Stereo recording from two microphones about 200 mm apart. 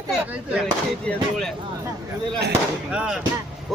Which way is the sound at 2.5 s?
5° right (ahead or behind).